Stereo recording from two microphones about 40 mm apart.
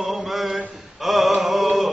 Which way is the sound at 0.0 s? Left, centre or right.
Centre.